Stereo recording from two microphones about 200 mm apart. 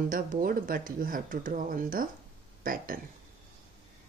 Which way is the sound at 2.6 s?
45° right (ahead or behind).